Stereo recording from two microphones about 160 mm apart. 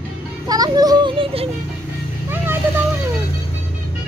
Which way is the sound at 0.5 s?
25° right (ahead or behind).